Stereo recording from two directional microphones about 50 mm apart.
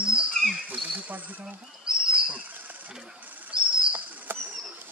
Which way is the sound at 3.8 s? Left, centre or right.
Right.